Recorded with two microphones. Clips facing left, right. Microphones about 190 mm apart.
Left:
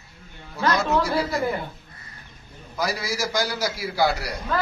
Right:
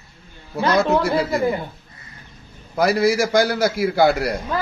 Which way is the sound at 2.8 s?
60° right (ahead or behind).